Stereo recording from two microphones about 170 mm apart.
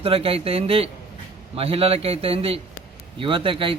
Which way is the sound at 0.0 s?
35° right (ahead or behind).